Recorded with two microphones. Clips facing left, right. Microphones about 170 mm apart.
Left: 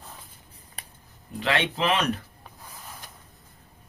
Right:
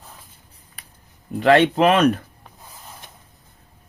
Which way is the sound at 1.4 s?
50° right (ahead or behind).